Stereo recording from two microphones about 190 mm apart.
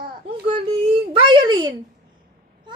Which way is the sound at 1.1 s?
25° right (ahead or behind).